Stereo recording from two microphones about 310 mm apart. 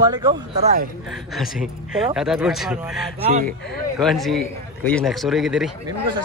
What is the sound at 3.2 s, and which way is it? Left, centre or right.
Speech, right.